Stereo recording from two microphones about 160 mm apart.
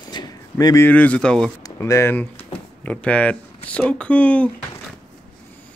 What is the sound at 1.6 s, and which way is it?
Speech, 20° left (ahead or behind).